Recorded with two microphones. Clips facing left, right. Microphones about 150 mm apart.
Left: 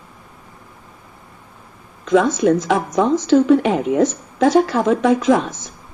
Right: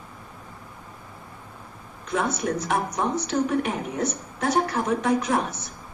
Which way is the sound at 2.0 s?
90° left.